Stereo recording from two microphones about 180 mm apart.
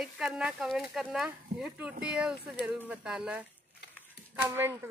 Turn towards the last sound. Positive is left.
turn(degrees=-10)  # may be behind; listen again after turning